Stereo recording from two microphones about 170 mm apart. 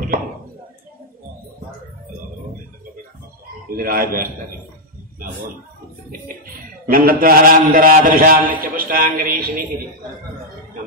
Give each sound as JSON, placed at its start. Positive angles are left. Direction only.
{"t": 3.7, "sound": "a man's voice", "side_deg": -60}
{"t": 6.9, "sound": "a man's voice", "side_deg": -60}